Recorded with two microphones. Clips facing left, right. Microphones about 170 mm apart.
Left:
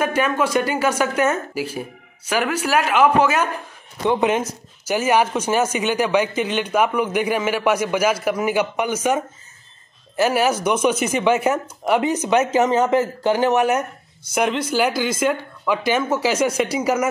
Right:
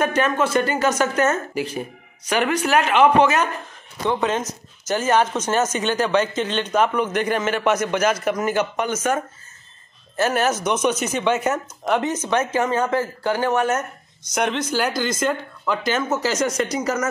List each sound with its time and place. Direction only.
0.0 s a man's voice: 10° left (ahead or behind)